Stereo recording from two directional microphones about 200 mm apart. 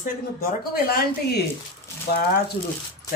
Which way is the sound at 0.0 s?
50° left (ahead or behind).